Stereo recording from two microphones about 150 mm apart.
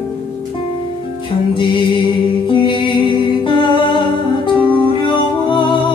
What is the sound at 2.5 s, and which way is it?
Music, 35° left (ahead or behind).